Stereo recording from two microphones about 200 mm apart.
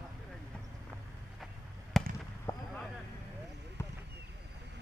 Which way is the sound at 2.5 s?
20° left (ahead or behind).